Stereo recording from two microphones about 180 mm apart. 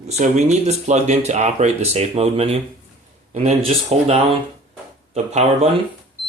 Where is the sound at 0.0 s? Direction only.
40° right (ahead or behind).